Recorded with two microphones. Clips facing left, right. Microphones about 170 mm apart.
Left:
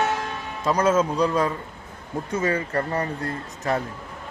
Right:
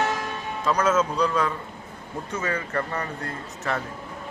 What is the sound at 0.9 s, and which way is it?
A man's voice, 30° left (ahead or behind).